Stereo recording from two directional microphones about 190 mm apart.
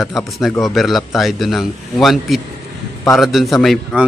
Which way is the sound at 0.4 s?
Centre (ahead or behind).